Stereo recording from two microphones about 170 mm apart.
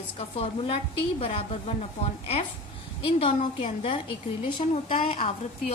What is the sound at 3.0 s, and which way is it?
Speech, 35° left (ahead or behind).